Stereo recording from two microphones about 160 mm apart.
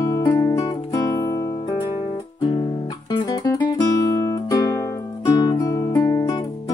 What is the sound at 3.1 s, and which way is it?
Music, 25° left (ahead or behind).